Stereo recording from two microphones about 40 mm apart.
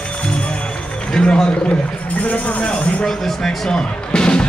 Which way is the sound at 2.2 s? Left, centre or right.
Left.